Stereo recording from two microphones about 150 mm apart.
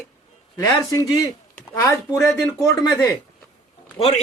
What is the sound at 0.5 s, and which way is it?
Speech, 20° left (ahead or behind).